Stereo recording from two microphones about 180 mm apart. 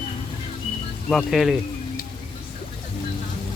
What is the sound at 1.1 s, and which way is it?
Speech, centre (ahead or behind).